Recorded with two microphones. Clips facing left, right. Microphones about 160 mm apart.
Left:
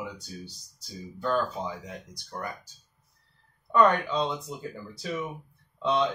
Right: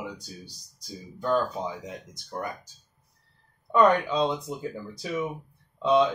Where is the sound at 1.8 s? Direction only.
20° right (ahead or behind).